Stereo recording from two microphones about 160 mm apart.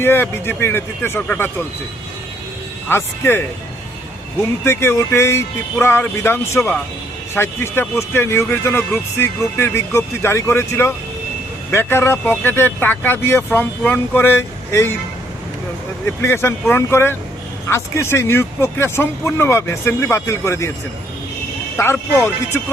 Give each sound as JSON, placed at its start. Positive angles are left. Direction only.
{"t": 0.0, "sound": "speech", "side_deg": 15}
{"t": 2.9, "sound": "speech", "side_deg": 15}
{"t": 4.6, "sound": "speech", "side_deg": 15}
{"t": 16.0, "sound": "speech", "side_deg": 15}
{"t": 21.8, "sound": "speech", "side_deg": 15}